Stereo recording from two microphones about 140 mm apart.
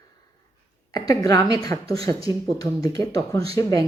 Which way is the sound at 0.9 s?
25° left (ahead or behind).